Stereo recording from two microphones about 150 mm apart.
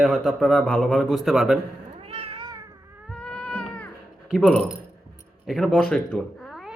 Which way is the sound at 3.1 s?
5° left (ahead or behind).